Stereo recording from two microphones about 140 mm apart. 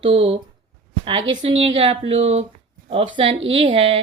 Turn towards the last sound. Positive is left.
turn(degrees=-40)  # may be behind; listen again after turning